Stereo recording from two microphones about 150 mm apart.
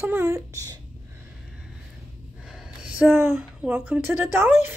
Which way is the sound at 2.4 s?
Centre (ahead or behind).